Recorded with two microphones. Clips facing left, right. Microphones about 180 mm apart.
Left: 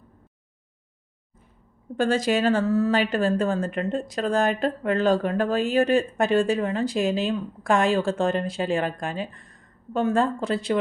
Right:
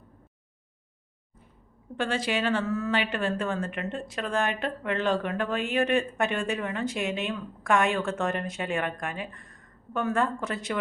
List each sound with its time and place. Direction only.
2.0 s a woman's voice: 40° left (ahead or behind)